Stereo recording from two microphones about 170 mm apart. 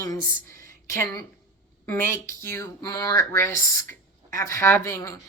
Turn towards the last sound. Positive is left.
turn(degrees=15)  # may be behind; listen again after turning